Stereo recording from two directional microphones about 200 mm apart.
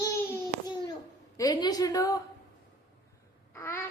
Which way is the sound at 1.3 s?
20° left (ahead or behind).